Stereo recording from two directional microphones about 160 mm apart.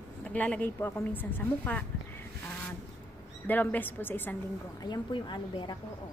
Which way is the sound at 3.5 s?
10° left (ahead or behind).